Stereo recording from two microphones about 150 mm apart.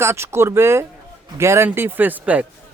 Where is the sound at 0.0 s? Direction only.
15° right (ahead or behind).